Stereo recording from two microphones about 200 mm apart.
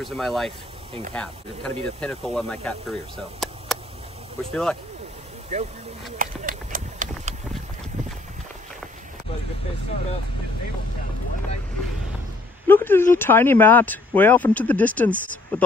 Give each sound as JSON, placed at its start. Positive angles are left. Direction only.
{"t": 0.0, "sound": "speech", "side_deg": 0}
{"t": 5.5, "sound": "speech", "side_deg": -35}
{"t": 6.1, "sound": "clip-clop", "side_deg": -40}
{"t": 12.6, "sound": "speech", "side_deg": 10}